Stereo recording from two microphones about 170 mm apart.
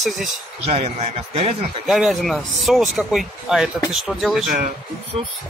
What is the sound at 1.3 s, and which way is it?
Speech, 35° right (ahead or behind).